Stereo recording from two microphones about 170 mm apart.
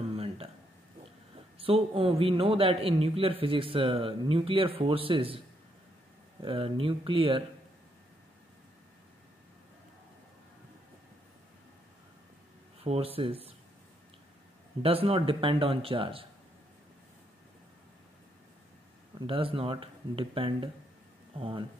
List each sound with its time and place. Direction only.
0.1 s a sound: 35° right (ahead or behind)
1.6 s a man's voice: 35° right (ahead or behind)
6.4 s a man's voice: 30° right (ahead or behind)
12.8 s speech: 35° right (ahead or behind)
14.8 s a man's voice: 35° right (ahead or behind)
19.1 s a man's voice: 30° right (ahead or behind)